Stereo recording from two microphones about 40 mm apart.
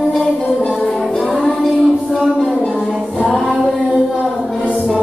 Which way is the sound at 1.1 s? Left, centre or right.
Centre.